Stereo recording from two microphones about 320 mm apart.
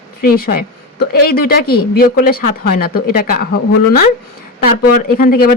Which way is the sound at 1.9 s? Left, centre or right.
Left.